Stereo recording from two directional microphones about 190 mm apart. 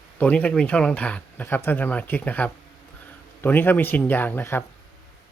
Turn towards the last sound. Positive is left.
turn(degrees=10)  # may be behind; listen again after turning